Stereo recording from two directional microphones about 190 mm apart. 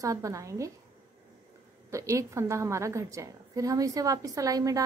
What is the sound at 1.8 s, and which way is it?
A woman's voice, 15° right (ahead or behind).